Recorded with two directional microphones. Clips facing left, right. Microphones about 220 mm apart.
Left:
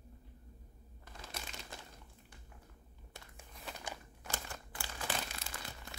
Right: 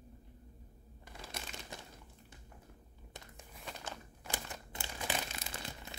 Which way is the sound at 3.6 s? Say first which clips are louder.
Even; 10° left (ahead or behind).